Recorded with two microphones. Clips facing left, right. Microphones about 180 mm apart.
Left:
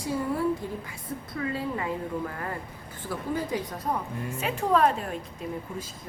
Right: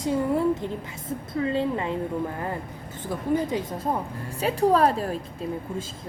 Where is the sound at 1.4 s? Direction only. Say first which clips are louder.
Right 5 dB; 25° right (ahead or behind).